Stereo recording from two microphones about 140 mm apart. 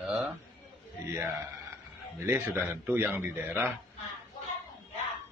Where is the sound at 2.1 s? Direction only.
20° right (ahead or behind).